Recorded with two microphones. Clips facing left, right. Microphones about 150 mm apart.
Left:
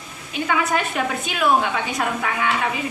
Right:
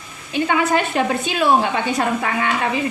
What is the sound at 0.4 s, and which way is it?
A woman's voice, 30° right (ahead or behind).